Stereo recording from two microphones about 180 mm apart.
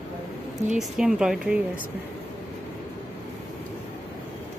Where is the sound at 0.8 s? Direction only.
Centre (ahead or behind).